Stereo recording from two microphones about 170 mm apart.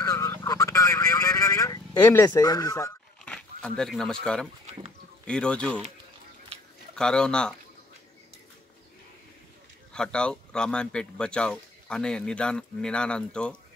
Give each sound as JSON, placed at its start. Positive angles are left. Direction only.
{"t": 0.0, "sound": "telephone", "side_deg": 20}
{"t": 2.2, "sound": "speech", "side_deg": 20}
{"t": 3.3, "sound": "speech", "side_deg": 5}
{"t": 7.0, "sound": "speech", "side_deg": 5}
{"t": 9.9, "sound": "speech", "side_deg": 5}